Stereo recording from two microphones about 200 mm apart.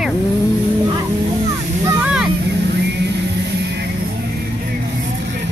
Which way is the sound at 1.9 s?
5° right (ahead or behind).